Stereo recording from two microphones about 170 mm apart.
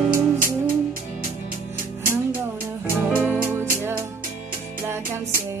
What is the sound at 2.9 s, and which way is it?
Music, 10° right (ahead or behind).